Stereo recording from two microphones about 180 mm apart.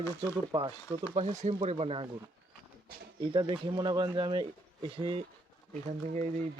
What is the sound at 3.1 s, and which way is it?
Speech, 25° right (ahead or behind).